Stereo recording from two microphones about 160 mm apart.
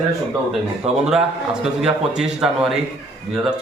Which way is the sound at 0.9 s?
40° right (ahead or behind).